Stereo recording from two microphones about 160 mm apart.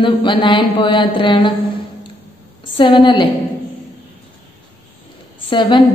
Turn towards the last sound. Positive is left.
turn(degrees=30)  # may be behind; listen again after turning